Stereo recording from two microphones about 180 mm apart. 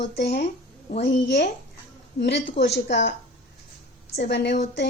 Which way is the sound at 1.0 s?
75° left (ahead or behind).